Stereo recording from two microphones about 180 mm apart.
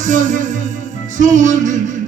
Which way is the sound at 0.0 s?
45° right (ahead or behind).